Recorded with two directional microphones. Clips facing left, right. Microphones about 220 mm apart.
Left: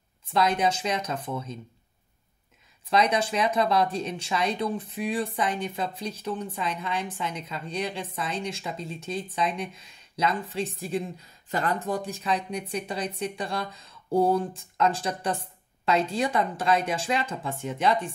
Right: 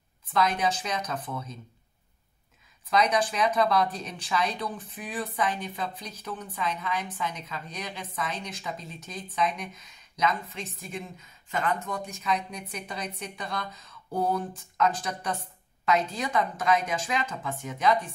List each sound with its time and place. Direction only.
0.3 s speech: 25° left (ahead or behind)
2.9 s speech: 25° left (ahead or behind)